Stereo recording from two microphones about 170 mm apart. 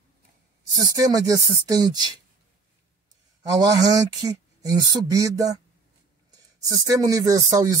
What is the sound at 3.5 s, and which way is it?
Speech, 20° right (ahead or behind).